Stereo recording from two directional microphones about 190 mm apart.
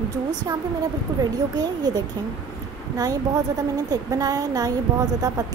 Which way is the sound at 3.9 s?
20° right (ahead or behind).